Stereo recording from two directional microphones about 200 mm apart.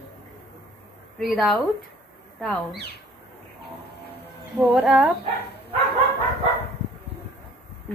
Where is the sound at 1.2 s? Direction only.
Centre (ahead or behind).